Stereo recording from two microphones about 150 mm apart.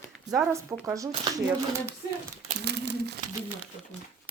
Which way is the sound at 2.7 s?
90° right.